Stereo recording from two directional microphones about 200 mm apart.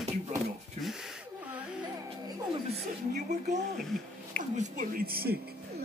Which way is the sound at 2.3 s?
25° right (ahead or behind).